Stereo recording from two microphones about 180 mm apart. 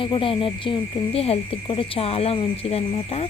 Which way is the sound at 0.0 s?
30° left (ahead or behind).